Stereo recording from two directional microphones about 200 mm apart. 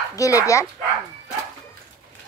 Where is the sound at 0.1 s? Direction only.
15° left (ahead or behind).